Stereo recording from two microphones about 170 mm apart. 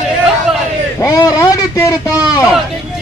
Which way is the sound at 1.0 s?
20° left (ahead or behind).